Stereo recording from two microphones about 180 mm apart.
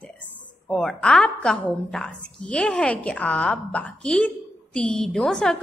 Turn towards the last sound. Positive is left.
turn(degrees=5)  # may be behind; listen again after turning